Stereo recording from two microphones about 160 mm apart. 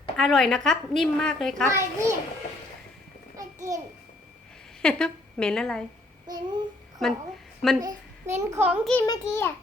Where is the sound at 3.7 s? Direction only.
20° right (ahead or behind).